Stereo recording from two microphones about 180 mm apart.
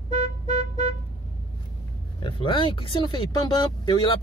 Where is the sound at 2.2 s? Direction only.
25° left (ahead or behind).